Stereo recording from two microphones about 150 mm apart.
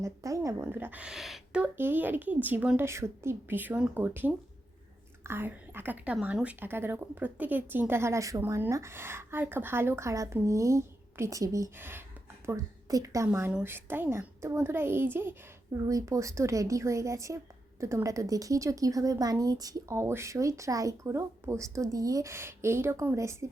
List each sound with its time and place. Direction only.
0.0 s a child's voice: 20° right (ahead or behind)